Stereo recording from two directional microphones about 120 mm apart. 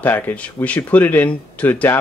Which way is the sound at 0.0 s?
15° left (ahead or behind).